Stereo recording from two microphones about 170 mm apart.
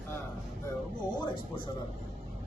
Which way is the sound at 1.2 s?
30° left (ahead or behind).